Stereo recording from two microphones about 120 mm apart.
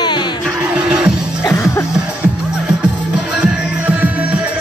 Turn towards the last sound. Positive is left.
turn(degrees=-10)  # may be behind; listen again after turning